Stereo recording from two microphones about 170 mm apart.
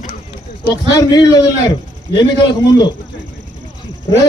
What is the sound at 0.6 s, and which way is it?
A man's voice, 25° left (ahead or behind).